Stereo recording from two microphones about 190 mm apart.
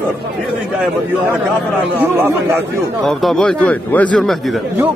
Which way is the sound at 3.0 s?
Centre (ahead or behind).